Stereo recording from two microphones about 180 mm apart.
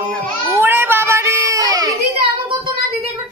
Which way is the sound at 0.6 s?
10° right (ahead or behind).